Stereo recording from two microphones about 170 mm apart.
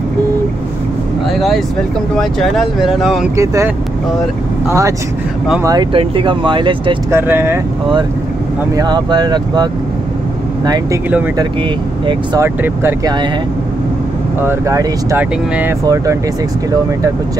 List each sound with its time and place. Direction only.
1.3 s speech: centre (ahead or behind)
3.3 s speech: 20° right (ahead or behind)
7.1 s speech: 15° right (ahead or behind)
8.7 s speech: 25° right (ahead or behind)
12.4 s speech: 15° right (ahead or behind)
14.4 s speech: 15° right (ahead or behind)